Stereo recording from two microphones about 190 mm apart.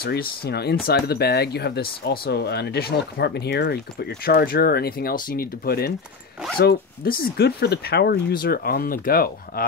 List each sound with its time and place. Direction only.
0.0 s speech: 50° left (ahead or behind)